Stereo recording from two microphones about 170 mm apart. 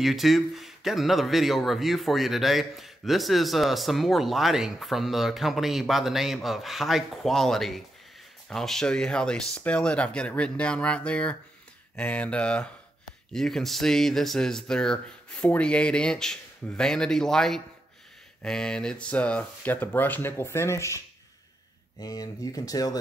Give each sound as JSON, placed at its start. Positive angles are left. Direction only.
{"t": 0.0, "sound": "speech", "side_deg": 0}
{"t": 22.0, "sound": "speech", "side_deg": 20}